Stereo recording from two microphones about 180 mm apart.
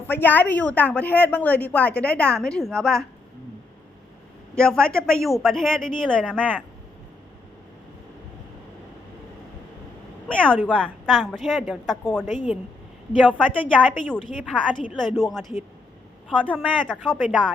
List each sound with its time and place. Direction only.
0.1 s a woman's voice: 10° left (ahead or behind)
4.5 s speech: 5° left (ahead or behind)
10.2 s a woman's voice: 5° left (ahead or behind)
12.2 s speech: 40° left (ahead or behind)
13.2 s speech: 5° left (ahead or behind)